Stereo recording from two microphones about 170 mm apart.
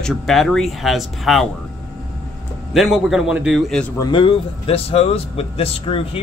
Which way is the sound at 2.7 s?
Centre (ahead or behind).